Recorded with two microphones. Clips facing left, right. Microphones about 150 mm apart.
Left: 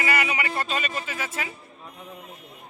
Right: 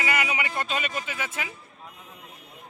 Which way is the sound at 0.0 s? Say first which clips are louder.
Left 2 dB; 15° right (ahead or behind).